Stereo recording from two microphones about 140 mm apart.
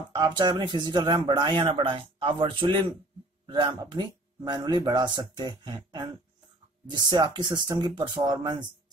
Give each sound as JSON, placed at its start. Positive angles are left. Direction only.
{"t": 0.1, "sound": "speech", "side_deg": -35}